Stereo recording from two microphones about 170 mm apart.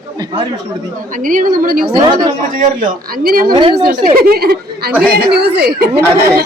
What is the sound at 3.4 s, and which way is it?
Speech, 25° right (ahead or behind).